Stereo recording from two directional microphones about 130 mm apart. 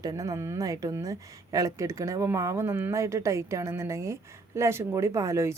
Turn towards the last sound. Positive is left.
turn(degrees=-20)  # may be behind; listen again after turning